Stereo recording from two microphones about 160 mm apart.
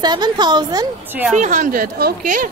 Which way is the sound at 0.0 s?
25° right (ahead or behind).